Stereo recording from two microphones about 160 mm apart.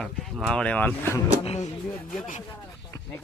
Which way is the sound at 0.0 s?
Centre (ahead or behind).